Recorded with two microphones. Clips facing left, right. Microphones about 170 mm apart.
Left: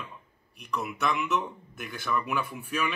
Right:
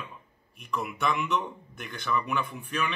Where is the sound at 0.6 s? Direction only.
Centre (ahead or behind).